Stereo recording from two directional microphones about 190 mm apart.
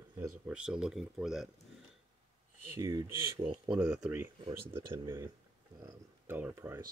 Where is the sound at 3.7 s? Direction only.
5° right (ahead or behind).